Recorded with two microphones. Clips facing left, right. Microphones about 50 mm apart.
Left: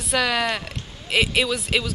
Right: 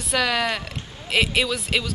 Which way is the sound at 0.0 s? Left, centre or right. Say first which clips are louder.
Even; centre.